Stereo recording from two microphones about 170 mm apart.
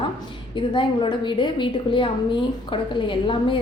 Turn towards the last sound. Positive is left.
turn(degrees=30)  # may be behind; listen again after turning